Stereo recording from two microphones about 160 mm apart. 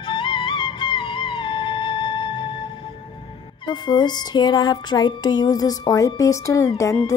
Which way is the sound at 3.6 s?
30° left (ahead or behind).